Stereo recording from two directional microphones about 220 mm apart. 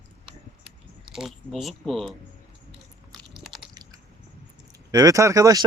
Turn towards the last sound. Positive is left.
turn(degrees=-15)  # may be behind; listen again after turning